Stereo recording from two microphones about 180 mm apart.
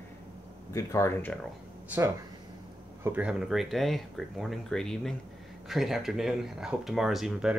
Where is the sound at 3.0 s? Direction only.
10° right (ahead or behind).